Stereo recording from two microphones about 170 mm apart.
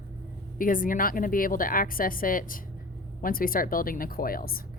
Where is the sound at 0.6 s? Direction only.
55° left (ahead or behind).